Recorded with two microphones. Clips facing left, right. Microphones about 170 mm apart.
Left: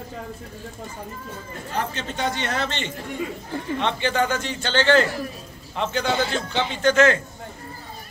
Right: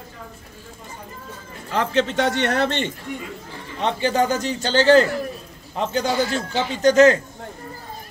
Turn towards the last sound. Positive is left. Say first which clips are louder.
# right 4 dB
turn(degrees=-40)  # may be behind; listen again after turning